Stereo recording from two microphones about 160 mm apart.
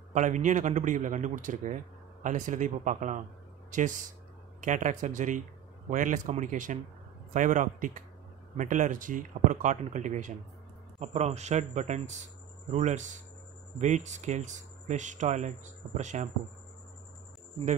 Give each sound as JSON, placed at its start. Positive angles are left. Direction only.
{"t": 0.1, "sound": "speech", "side_deg": -50}